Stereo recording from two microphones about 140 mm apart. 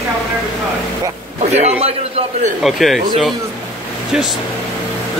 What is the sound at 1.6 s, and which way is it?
Speech, 50° right (ahead or behind).